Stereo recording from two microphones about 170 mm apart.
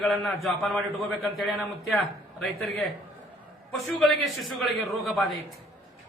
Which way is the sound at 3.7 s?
Centre (ahead or behind).